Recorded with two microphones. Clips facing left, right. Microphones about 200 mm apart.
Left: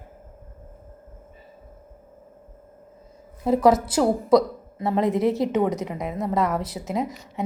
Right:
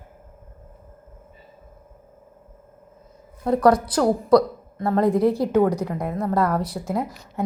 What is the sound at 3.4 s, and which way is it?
Speech, centre (ahead or behind).